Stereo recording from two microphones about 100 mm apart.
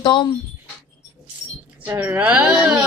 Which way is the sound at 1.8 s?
20° right (ahead or behind).